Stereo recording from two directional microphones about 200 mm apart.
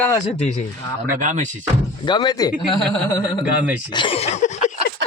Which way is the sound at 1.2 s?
35° right (ahead or behind).